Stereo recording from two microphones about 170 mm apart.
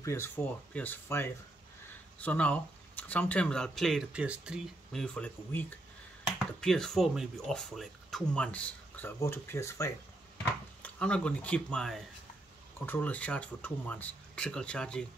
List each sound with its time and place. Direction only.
0.0 s speech: 15° left (ahead or behind); by 4.6 s 5° right (ahead or behind)
4.9 s speech: 5° left (ahead or behind)